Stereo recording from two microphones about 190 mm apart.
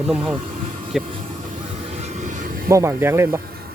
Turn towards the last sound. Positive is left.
turn(degrees=-15)  # may be behind; listen again after turning